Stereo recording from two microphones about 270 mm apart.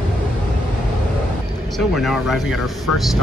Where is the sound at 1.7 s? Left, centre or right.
Centre.